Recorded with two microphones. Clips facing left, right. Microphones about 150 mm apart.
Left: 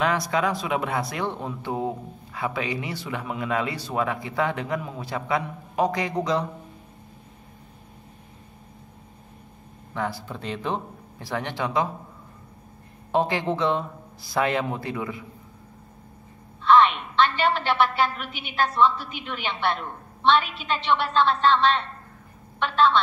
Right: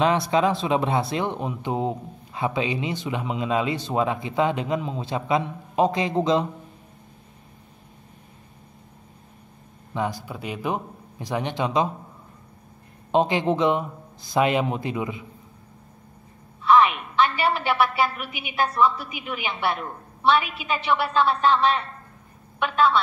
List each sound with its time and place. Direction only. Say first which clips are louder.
0.0 s speech: right 3 dB; 25° right (ahead or behind)
9.9 s speech: right 2 dB; 15° right (ahead or behind)
13.1 s speech: right 3 dB; 20° right (ahead or behind)
16.6 s a woman's voice: even; 10° right (ahead or behind)